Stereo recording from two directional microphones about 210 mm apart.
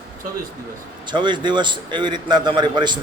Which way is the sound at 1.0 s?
20° right (ahead or behind).